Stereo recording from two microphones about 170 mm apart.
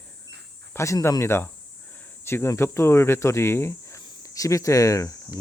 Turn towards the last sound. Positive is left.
turn(degrees=20)  # may be behind; listen again after turning